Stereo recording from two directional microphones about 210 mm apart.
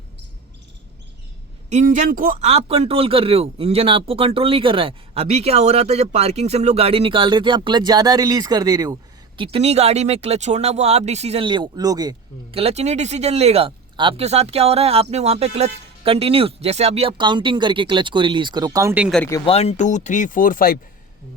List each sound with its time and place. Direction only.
1.7 s speech: 35° right (ahead or behind); by 19.2 s 5° right (ahead or behind)
19.5 s speech: 30° left (ahead or behind)